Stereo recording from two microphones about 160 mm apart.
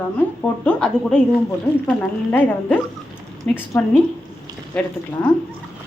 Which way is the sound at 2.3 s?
10° left (ahead or behind).